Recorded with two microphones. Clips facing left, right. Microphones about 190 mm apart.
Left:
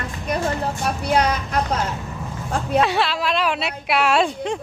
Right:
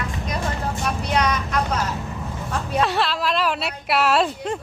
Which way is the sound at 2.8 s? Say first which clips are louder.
Left 1 dB; centre (ahead or behind).